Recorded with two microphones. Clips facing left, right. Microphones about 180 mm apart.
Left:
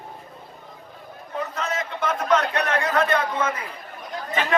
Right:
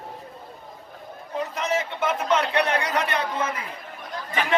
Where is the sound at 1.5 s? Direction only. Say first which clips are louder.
Right 2 dB; 10° right (ahead or behind).